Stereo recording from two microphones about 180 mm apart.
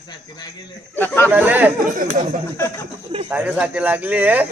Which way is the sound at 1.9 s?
45° right (ahead or behind).